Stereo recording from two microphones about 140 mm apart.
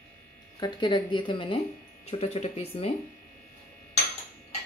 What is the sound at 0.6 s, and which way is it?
Speech, 30° left (ahead or behind).